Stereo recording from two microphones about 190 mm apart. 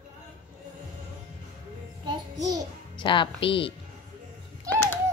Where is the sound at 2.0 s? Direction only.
20° right (ahead or behind).